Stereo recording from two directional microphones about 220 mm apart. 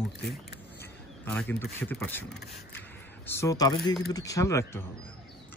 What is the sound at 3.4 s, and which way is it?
Speech, 15° left (ahead or behind).